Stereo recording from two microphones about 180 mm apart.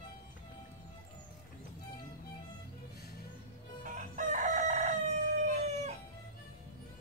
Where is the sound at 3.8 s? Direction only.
45° right (ahead or behind).